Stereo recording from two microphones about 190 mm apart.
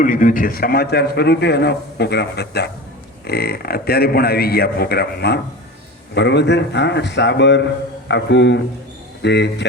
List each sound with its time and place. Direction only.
0.0 s a man's voice: 45° left (ahead or behind); by 9.6 s 65° left (ahead or behind)